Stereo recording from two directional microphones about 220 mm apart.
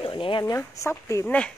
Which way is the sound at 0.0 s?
25° left (ahead or behind).